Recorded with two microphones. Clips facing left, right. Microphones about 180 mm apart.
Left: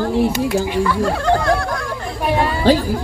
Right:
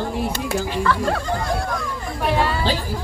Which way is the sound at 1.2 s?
80° left.